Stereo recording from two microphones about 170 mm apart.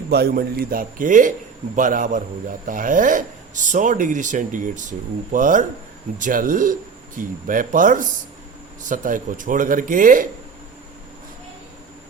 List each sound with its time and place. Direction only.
0.1 s a man's voice: 70° right (ahead or behind); by 10.2 s 50° right (ahead or behind)